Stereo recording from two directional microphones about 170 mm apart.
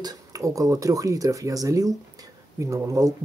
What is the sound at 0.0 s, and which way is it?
Speech, 20° right (ahead or behind).